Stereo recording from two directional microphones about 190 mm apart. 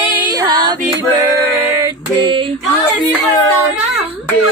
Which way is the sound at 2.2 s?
25° right (ahead or behind).